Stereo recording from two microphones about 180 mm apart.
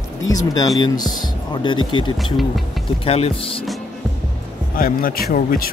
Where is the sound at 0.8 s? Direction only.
20° left (ahead or behind).